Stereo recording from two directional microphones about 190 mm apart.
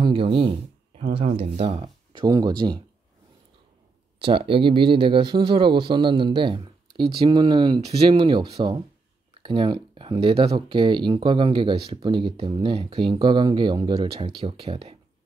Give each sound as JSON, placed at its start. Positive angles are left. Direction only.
{"t": 0.0, "sound": "speech", "side_deg": -30}
{"t": 4.2, "sound": "speech", "side_deg": -30}